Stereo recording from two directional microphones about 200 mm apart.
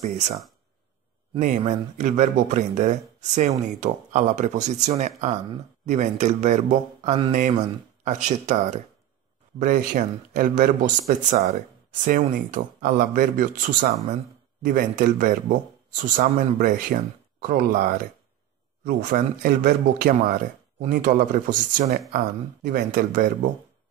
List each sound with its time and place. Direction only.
1.6 s speech: 35° right (ahead or behind)